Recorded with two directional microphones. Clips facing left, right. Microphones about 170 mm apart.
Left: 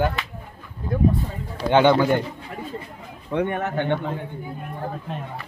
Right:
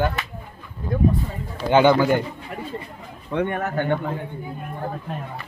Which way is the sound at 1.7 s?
5° right (ahead or behind).